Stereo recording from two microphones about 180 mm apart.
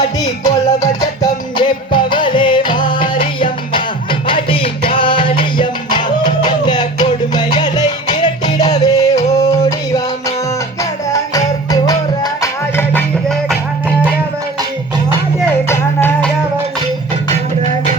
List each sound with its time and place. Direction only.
0.4 s music: 20° left (ahead or behind)
11.1 s music: 20° left (ahead or behind)
15.7 s music: 10° left (ahead or behind)